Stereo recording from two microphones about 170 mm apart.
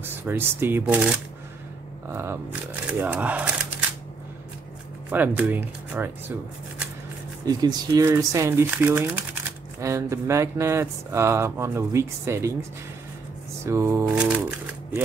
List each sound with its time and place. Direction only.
0.0 s speech: 15° right (ahead or behind)
2.1 s speech: 15° right (ahead or behind)
5.1 s speech: 10° right (ahead or behind)
7.4 s speech: 25° right (ahead or behind)
13.7 s speech: 15° right (ahead or behind)